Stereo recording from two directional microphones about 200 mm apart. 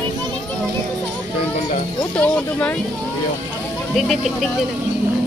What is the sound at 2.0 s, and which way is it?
Speech, 5° left (ahead or behind).